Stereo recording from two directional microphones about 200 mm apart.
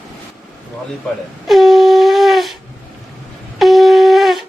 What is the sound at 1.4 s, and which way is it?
Shofar, centre (ahead or behind).